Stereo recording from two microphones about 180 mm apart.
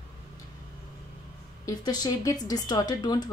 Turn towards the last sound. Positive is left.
turn(degrees=20)  # may be behind; listen again after turning